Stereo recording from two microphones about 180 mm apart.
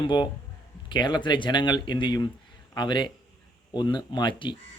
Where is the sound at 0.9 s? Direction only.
25° left (ahead or behind).